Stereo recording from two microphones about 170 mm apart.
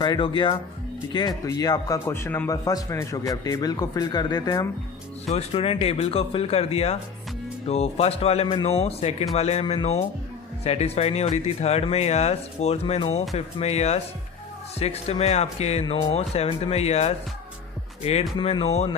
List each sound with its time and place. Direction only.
0.0 s a man's voice: 30° left (ahead or behind)
5.3 s speech: 35° left (ahead or behind)